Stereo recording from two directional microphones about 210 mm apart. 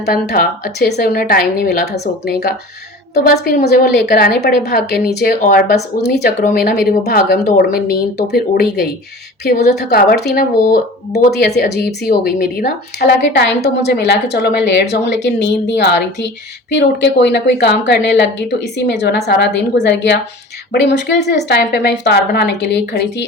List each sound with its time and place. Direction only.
0.0 s speech: 50° left (ahead or behind)